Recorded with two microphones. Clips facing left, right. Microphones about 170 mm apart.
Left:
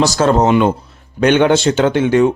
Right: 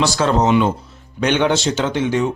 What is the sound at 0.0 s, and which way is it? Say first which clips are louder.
A man's voice: left 4 dB; 40° left (ahead or behind).